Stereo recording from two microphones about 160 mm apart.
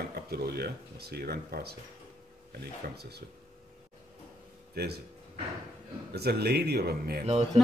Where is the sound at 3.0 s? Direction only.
90° right.